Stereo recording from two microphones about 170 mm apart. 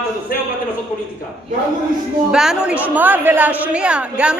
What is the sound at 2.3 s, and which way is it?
A woman's voice, 5° right (ahead or behind).